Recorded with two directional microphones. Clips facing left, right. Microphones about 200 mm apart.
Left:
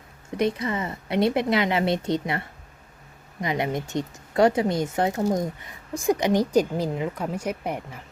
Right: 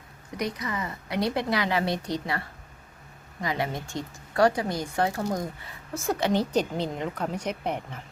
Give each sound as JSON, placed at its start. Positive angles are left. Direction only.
{"t": 0.3, "sound": "speech", "side_deg": 25}